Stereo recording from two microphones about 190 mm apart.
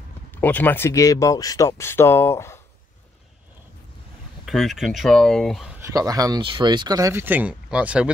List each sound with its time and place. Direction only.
0.3 s speech: 10° left (ahead or behind)
4.5 s speech: centre (ahead or behind)
5.9 s speech: 20° right (ahead or behind)